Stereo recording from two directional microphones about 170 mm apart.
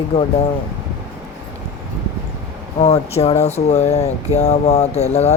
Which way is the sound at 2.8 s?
40° left (ahead or behind).